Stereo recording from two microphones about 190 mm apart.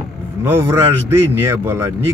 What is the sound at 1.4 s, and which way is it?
Speech, 15° right (ahead or behind).